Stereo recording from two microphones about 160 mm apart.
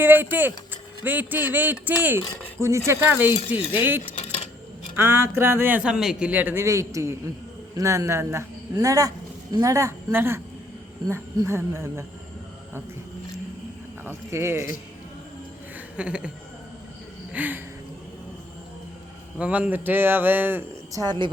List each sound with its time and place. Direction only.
0.0 s a man's voice: 10° right (ahead or behind)
14.0 s a man's voice: 15° right (ahead or behind)
16.0 s a man's voice: 5° right (ahead or behind)
17.3 s a man's voice: 10° right (ahead or behind)
19.4 s a man's voice: 5° right (ahead or behind)